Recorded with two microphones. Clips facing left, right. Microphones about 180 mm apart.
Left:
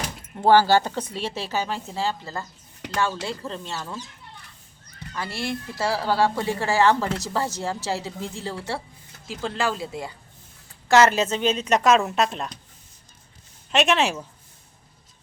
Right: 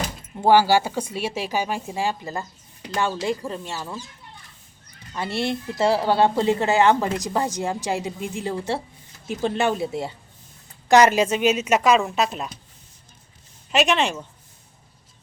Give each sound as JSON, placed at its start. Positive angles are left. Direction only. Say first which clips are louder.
{"t": 0.3, "sound": "a woman's voice", "louder": "even", "side_deg": -10}
{"t": 5.1, "sound": "a woman's voice", "louder": "right 4 dB", "side_deg": -25}
{"t": 13.7, "sound": "speech", "louder": "even", "side_deg": 0}